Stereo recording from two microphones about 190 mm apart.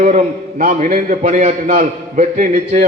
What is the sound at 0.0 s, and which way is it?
A man's voice, 40° right (ahead or behind).